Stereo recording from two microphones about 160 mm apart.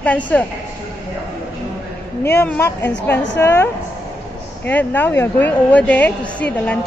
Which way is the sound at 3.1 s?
15° left (ahead or behind).